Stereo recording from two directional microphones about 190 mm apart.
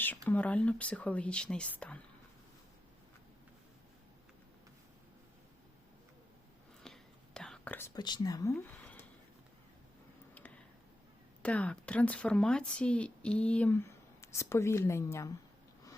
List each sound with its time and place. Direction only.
0.3 s speech: 10° left (ahead or behind)
6.8 s whispering: 5° left (ahead or behind)
7.9 s speech: 20° left (ahead or behind)
11.4 s speech: 5° left (ahead or behind)